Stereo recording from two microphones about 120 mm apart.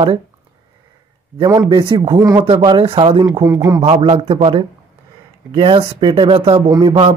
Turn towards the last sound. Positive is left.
turn(degrees=-35)  # may be behind; listen again after turning